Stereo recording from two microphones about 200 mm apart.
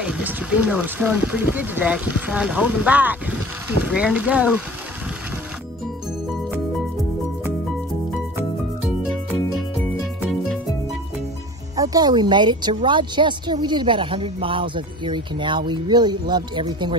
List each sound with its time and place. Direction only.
0.0 s speech: 5° right (ahead or behind)
11.7 s speech: 20° right (ahead or behind)